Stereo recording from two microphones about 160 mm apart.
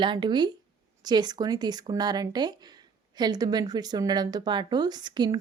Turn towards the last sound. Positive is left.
turn(degrees=-25)  # may be behind; listen again after turning